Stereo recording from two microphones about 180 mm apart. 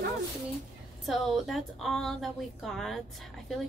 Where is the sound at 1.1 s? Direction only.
Centre (ahead or behind).